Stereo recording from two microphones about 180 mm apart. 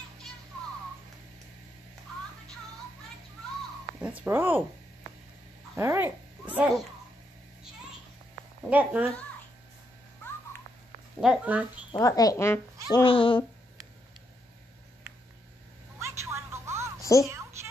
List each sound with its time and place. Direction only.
4.0 s speech: 10° right (ahead or behind)
5.8 s a child's voice: 15° right (ahead or behind)
8.6 s speech: 10° right (ahead or behind)
11.1 s speech: 5° right (ahead or behind)
12.0 s speech: 20° left (ahead or behind)
12.9 s speech: 30° left (ahead or behind)
16.0 s a sound: 15° right (ahead or behind)
17.0 s a sound: 15° left (ahead or behind)